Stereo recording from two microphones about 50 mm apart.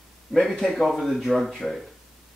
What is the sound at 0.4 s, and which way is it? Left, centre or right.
Speech, centre.